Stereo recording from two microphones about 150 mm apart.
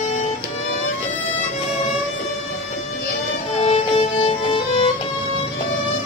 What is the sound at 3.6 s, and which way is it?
Music, 40° left (ahead or behind).